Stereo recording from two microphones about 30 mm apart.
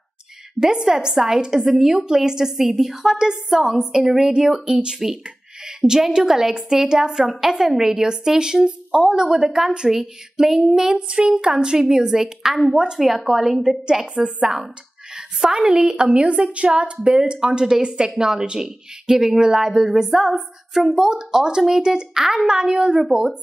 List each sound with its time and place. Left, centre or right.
0.6 s a woman's voice: right
5.2 s a sound: right
6.0 s a woman's voice: centre
9.9 s a woman's voice: centre
11.0 s a woman's voice: right
12.0 s a woman's voice: centre
13.0 s speech: centre
14.0 s a woman's voice: right
15.1 s a woman's voice: centre